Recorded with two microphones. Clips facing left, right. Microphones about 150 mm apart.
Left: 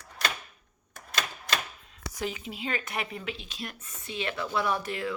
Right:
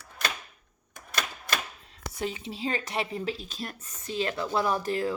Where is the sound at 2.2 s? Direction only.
30° right (ahead or behind).